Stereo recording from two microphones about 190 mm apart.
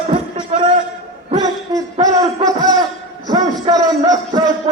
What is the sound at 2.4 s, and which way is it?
A man's voice, 20° right (ahead or behind).